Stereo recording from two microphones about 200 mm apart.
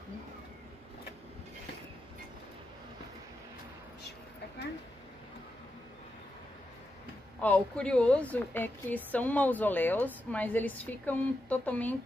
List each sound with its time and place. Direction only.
7.4 s a woman's voice: 5° left (ahead or behind)